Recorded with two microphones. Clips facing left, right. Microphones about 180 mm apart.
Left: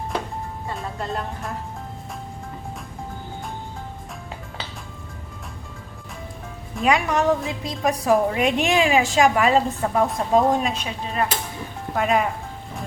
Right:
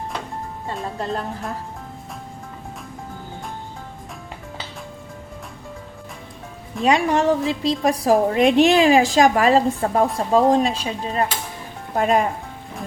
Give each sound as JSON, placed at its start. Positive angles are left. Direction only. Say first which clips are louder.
{"t": 6.8, "sound": "a woman's voice", "louder": "right 2 dB", "side_deg": -30}